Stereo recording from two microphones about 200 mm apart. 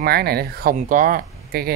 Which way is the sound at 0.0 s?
50° right (ahead or behind).